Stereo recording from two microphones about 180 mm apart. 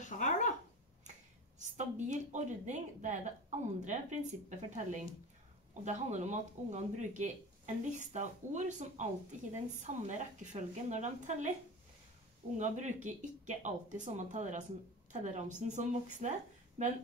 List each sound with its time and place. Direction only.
0.0 s a sound: 45° left (ahead or behind)
1.6 s speech: 40° right (ahead or behind)
5.9 s speech: 40° right (ahead or behind)
12.5 s a woman's voice: 40° right (ahead or behind)